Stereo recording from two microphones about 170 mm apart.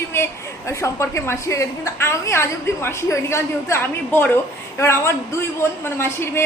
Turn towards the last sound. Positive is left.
turn(degrees=15)  # may be behind; listen again after turning